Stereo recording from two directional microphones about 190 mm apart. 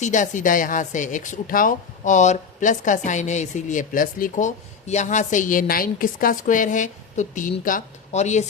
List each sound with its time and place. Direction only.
0.0 s speech: 40° left (ahead or behind)